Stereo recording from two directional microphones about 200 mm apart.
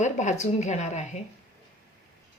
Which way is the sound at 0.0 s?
35° left (ahead or behind).